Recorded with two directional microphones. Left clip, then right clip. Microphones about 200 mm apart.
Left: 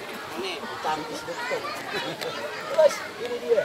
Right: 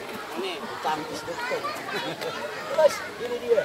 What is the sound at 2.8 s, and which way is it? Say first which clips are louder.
Speech: left 1 dB; 20° right (ahead or behind).